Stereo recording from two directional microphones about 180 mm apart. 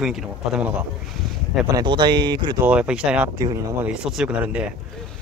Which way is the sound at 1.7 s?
25° right (ahead or behind).